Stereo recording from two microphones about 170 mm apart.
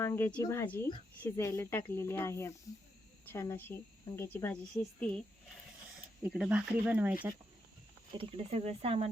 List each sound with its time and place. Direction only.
0.0 s a woman's voice: 15° left (ahead or behind)
6.2 s speech: 5° right (ahead or behind)
8.2 s speech: 35° right (ahead or behind)